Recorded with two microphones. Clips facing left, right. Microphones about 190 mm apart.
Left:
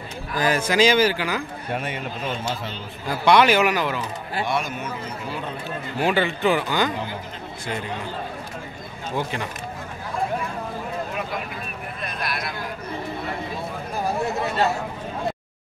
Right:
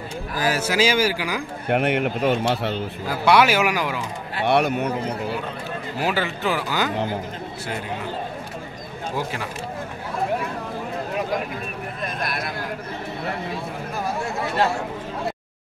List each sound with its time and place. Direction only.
0.4 s speech: 5° right (ahead or behind)
1.7 s speech: 65° right (ahead or behind)
3.1 s speech: 10° right (ahead or behind)
4.5 s speech: 65° right (ahead or behind)
5.9 s speech: 5° right (ahead or behind)
9.1 s speech: 5° right (ahead or behind)
12.0 s speech: 50° right (ahead or behind)